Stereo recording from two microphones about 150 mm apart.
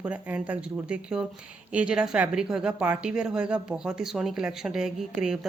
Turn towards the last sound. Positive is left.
turn(degrees=-5)  # may be behind; listen again after turning